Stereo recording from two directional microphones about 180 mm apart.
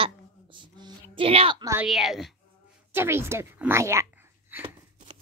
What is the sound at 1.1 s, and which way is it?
Speech, 30° right (ahead or behind).